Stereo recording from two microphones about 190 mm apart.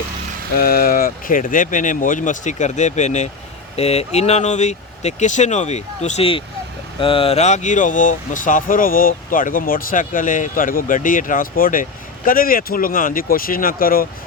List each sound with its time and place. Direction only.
0.5 s speech: 50° left (ahead or behind)